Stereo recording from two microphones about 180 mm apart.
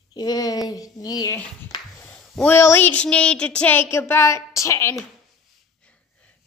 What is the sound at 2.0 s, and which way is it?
Speech, 10° left (ahead or behind).